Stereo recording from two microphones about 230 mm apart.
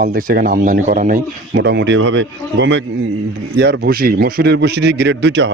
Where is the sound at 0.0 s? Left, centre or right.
Right.